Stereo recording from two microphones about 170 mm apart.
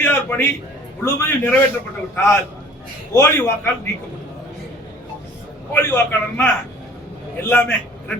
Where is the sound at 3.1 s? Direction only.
15° left (ahead or behind).